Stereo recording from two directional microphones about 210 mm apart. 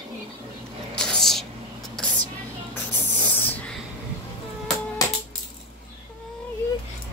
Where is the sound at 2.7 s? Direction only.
10° left (ahead or behind).